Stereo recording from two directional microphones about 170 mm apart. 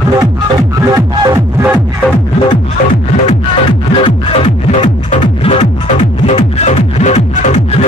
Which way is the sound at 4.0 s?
30° left (ahead or behind).